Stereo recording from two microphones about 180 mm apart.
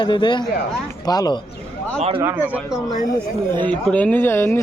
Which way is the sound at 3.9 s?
5° left (ahead or behind).